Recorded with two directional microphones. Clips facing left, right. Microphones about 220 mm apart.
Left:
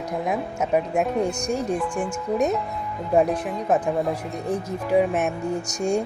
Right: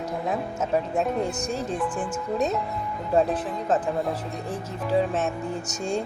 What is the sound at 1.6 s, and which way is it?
Speech, centre (ahead or behind).